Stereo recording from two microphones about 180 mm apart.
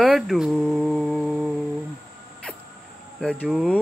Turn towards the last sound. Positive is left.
turn(degrees=-5)  # may be behind; listen again after turning